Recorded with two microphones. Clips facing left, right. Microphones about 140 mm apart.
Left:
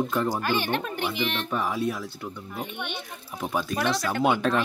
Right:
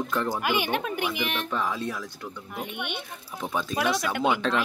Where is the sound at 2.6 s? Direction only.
10° right (ahead or behind).